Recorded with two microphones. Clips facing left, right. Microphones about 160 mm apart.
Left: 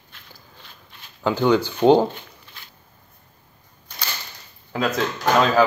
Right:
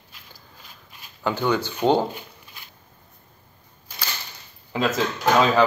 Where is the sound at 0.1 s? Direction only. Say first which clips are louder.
Left 2 dB; 10° right (ahead or behind).